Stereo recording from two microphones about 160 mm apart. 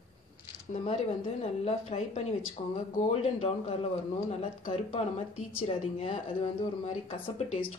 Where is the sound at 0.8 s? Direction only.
40° left (ahead or behind).